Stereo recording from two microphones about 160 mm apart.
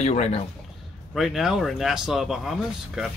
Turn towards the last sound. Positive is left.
turn(degrees=0)  # may be behind; listen again after turning